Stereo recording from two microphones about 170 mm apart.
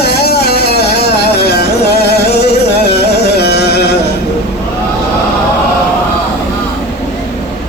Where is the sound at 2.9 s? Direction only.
75° left (ahead or behind).